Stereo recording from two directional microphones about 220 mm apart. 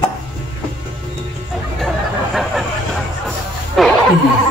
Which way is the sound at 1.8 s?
Centre (ahead or behind).